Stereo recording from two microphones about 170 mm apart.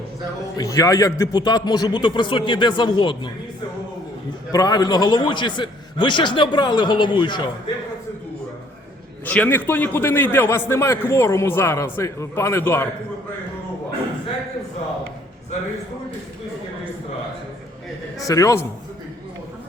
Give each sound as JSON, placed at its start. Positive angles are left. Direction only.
{"t": 0.5, "sound": "a man's voice", "side_deg": 20}
{"t": 4.5, "sound": "a man's voice", "side_deg": 25}
{"t": 9.2, "sound": "a man's voice", "side_deg": 10}
{"t": 18.2, "sound": "a man's voice", "side_deg": 20}